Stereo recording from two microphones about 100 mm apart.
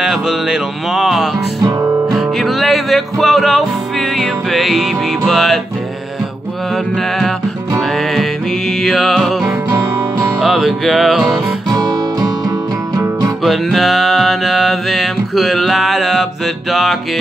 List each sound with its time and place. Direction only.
0.0 s music: 5° right (ahead or behind)
1.6 s music: 35° right (ahead or behind)
2.1 s music: centre (ahead or behind)
7.0 s music: 5° left (ahead or behind)
9.7 s music: 25° right (ahead or behind)
10.4 s music: centre (ahead or behind)
11.7 s music: 40° right (ahead or behind)
13.4 s music: centre (ahead or behind)